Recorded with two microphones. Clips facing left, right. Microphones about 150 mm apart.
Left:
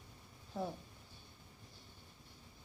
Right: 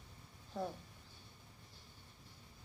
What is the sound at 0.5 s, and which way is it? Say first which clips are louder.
Speech: left 1 dB; 5° left (ahead or behind).